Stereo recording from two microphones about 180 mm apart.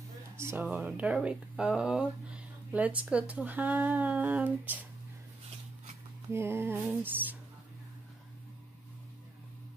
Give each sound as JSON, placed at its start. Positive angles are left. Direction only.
{"t": 0.4, "sound": "speech", "side_deg": -10}
{"t": 6.3, "sound": "speech", "side_deg": -15}